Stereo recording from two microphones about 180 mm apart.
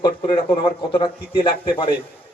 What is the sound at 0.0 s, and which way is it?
Speech, 25° left (ahead or behind).